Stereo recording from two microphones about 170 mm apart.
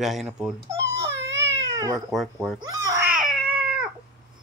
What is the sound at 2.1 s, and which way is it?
Speech, centre (ahead or behind).